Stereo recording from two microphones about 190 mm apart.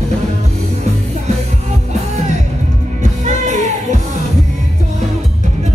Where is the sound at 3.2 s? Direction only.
40° right (ahead or behind).